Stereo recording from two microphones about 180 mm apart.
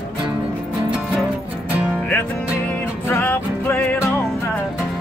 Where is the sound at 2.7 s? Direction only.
10° left (ahead or behind).